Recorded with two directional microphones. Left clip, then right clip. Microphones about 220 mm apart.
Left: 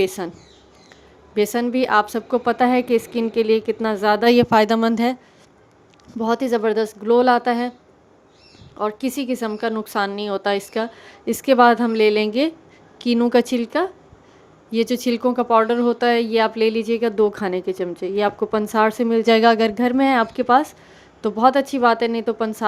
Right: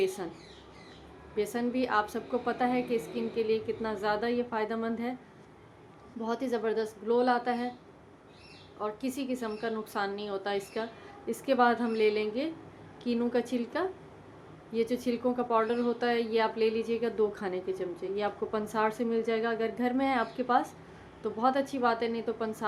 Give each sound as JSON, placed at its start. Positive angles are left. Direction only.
{"t": 0.0, "sound": "speech", "side_deg": 45}
{"t": 1.4, "sound": "speech", "side_deg": 45}
{"t": 6.1, "sound": "speech", "side_deg": 45}
{"t": 8.8, "sound": "speech", "side_deg": 50}